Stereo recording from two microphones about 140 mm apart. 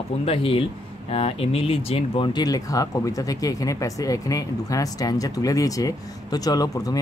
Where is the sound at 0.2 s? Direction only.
45° left (ahead or behind).